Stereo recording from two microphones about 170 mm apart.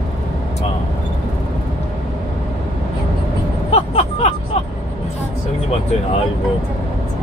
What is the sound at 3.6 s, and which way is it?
Vehicle, 40° left (ahead or behind).